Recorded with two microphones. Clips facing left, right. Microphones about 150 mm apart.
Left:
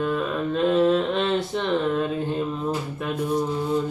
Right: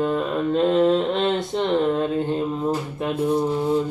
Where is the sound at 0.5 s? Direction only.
25° right (ahead or behind).